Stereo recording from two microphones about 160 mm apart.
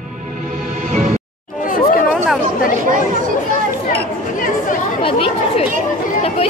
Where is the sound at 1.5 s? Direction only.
55° left (ahead or behind).